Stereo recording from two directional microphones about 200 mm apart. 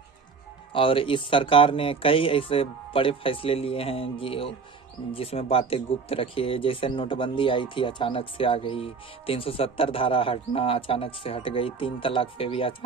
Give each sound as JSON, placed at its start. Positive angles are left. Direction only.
{"t": 0.7, "sound": "speech", "side_deg": 25}